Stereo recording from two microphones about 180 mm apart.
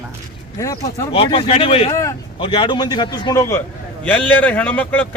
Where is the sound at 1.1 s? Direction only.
30° left (ahead or behind).